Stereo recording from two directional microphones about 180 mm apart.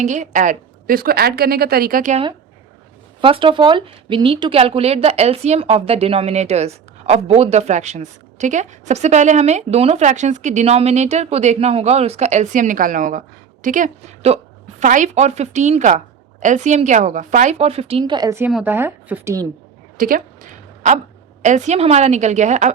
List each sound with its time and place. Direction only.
0.0 s a woman's voice: 40° right (ahead or behind)
3.2 s speech: 30° right (ahead or behind)
20.0 s a sound: 50° right (ahead or behind)
21.4 s speech: 40° right (ahead or behind)